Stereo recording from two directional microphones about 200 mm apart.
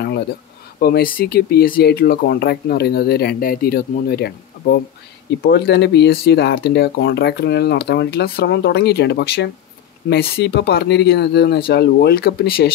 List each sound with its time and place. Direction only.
0.7 s speech: 50° left (ahead or behind)